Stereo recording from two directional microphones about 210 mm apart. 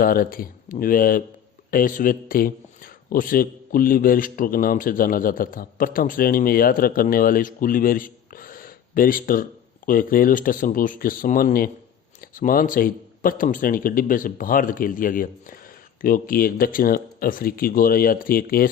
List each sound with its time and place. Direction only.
0.0 s speech: 45° left (ahead or behind)